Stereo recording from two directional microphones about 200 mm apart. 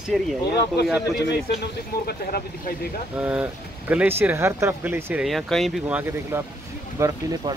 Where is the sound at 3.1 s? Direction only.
10° right (ahead or behind).